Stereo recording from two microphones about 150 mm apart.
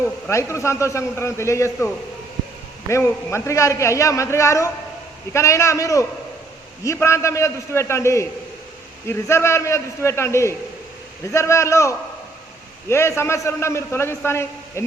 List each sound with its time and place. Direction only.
0.0 s a man's voice: 20° left (ahead or behind)
2.9 s a man's voice: 15° left (ahead or behind)